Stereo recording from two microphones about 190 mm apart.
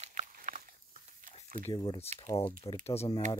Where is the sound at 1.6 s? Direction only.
25° left (ahead or behind).